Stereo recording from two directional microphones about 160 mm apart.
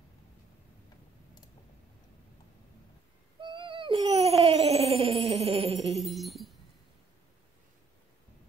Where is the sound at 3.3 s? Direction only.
30° right (ahead or behind).